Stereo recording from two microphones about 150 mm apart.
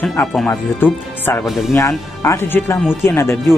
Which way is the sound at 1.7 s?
20° left (ahead or behind).